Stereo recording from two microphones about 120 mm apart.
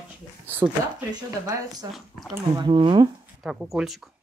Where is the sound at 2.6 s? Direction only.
40° right (ahead or behind).